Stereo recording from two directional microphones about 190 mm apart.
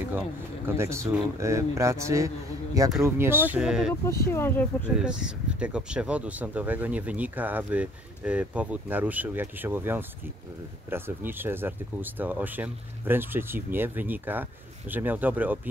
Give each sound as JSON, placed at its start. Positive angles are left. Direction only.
{"t": 0.7, "sound": "speech", "side_deg": -15}
{"t": 4.3, "sound": "speech", "side_deg": 10}
{"t": 4.9, "sound": "speech", "side_deg": -5}